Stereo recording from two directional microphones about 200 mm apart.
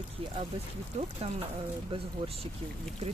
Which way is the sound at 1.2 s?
30° right (ahead or behind).